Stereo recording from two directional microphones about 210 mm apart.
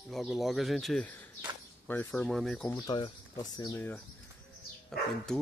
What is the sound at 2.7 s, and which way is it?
Speech, 20° left (ahead or behind).